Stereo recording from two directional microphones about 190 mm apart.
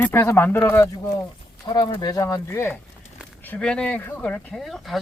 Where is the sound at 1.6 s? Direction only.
20° left (ahead or behind); by 4.9 s centre (ahead or behind).